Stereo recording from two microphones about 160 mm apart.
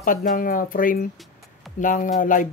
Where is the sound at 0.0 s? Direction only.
60° left (ahead or behind).